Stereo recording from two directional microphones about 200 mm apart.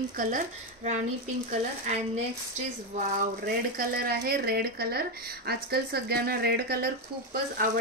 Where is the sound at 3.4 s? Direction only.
50° right (ahead or behind).